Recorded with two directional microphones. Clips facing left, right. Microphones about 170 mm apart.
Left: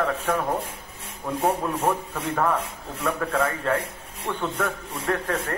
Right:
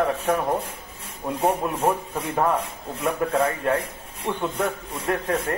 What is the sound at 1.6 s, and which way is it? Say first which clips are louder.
Speech: even; 20° right (ahead or behind).